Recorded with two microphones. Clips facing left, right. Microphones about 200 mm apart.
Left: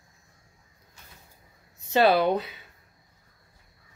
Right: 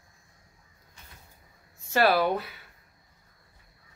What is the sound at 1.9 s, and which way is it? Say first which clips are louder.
Speech: left 3 dB; 20° left (ahead or behind).